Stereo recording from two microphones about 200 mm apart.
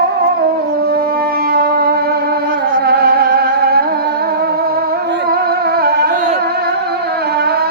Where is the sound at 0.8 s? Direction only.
50° right (ahead or behind).